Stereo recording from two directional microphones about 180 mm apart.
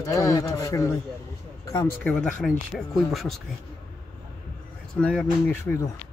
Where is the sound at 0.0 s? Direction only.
15° left (ahead or behind).